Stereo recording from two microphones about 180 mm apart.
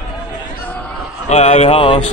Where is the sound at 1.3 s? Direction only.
35° left (ahead or behind).